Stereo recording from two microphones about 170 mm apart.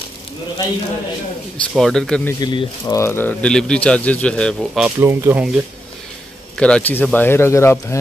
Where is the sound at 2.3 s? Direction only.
25° left (ahead or behind); by 4.9 s 5° right (ahead or behind).